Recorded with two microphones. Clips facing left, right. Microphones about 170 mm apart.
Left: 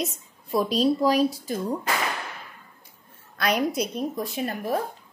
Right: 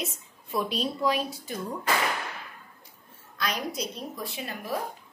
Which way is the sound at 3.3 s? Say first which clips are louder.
Left 7 dB; 60° left (ahead or behind).